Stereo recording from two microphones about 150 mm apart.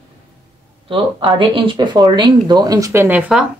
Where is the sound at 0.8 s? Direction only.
35° right (ahead or behind); by 3.4 s 5° right (ahead or behind).